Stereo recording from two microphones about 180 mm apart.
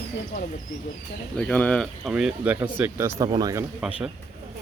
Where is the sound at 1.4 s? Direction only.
5° left (ahead or behind); by 3.6 s 20° right (ahead or behind).